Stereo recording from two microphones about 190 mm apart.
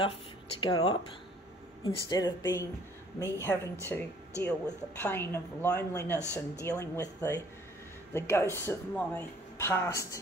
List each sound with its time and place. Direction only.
0.6 s a woman's voice: 20° left (ahead or behind)